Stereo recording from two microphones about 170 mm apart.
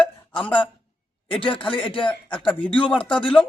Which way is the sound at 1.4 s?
30° left (ahead or behind).